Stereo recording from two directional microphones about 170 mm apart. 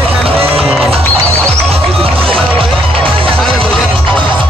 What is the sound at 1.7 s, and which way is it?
Music, 35° right (ahead or behind).